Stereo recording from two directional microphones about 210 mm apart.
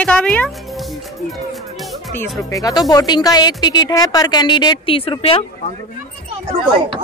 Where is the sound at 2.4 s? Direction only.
15° left (ahead or behind).